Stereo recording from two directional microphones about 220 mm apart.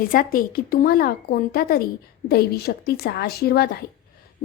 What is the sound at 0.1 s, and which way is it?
Speech, 40° left (ahead or behind).